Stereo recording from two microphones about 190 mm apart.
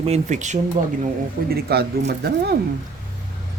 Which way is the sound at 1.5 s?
55° right (ahead or behind).